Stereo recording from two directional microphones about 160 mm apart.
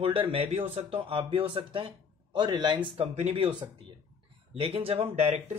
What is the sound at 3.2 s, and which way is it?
Speech, 45° right (ahead or behind).